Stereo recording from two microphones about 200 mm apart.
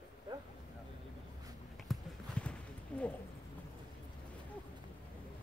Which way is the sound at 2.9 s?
5° left (ahead or behind).